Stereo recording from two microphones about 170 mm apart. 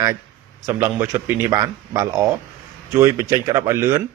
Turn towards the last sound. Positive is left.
turn(degrees=-15)  # may be behind; listen again after turning